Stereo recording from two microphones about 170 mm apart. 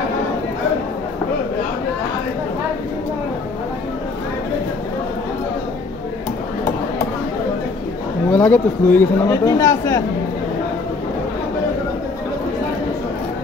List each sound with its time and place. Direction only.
8.3 s speech: 10° left (ahead or behind)